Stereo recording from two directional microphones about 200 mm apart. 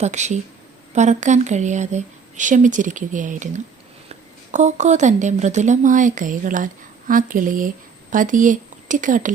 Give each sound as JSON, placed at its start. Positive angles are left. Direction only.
{"t": 0.0, "sound": "speech", "side_deg": -35}